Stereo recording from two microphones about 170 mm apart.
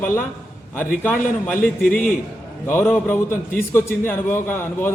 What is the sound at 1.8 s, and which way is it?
Speech, 55° left (ahead or behind).